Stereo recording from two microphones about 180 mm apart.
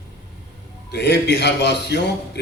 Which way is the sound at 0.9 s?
65° left (ahead or behind).